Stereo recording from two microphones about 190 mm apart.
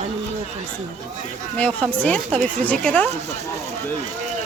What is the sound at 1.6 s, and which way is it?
Speech, 5° left (ahead or behind).